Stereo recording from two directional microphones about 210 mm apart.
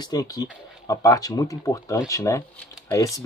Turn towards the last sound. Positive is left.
turn(degrees=15)  # may be behind; listen again after turning